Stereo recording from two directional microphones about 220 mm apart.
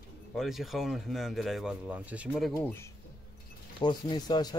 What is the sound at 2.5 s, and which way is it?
Speech, 10° left (ahead or behind).